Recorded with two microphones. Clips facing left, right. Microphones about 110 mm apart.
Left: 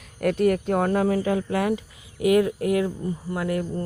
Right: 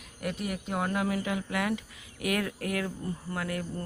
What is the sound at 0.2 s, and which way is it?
Speech, 55° left (ahead or behind).